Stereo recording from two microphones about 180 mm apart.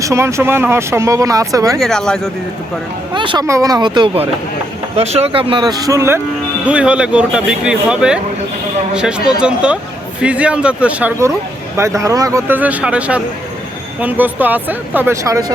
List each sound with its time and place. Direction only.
0.0 s speech: 15° right (ahead or behind)
1.8 s speech: 5° left (ahead or behind)
3.2 s speech: 25° right (ahead or behind)
6.7 s speech: 5° right (ahead or behind)